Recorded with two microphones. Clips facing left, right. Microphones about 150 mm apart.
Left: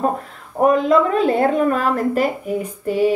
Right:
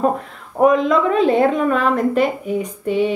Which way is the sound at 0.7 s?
40° left (ahead or behind).